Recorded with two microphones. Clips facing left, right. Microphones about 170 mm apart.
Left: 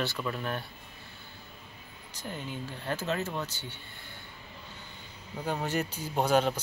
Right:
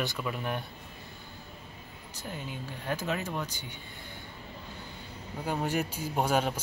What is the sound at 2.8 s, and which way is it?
Speech, 10° right (ahead or behind).